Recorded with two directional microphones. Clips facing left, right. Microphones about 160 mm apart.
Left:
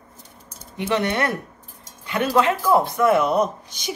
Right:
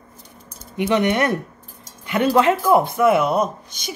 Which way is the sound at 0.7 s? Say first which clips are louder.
Right 4 dB; 15° right (ahead or behind).